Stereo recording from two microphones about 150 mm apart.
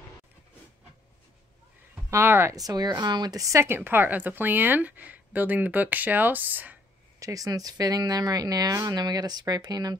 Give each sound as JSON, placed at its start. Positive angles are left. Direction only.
{"t": 2.0, "sound": "speech", "side_deg": -15}
{"t": 7.2, "sound": "speech", "side_deg": -25}